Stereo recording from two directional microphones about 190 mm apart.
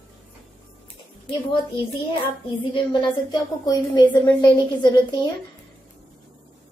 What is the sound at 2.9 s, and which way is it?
A woman's voice, 25° left (ahead or behind).